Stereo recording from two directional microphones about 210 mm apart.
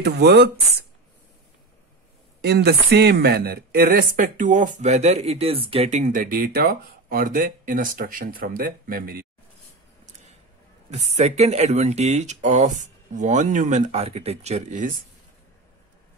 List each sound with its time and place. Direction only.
0.0 s speech: 50° right (ahead or behind)
2.4 s speech: 50° right (ahead or behind)
10.9 s speech: 30° right (ahead or behind)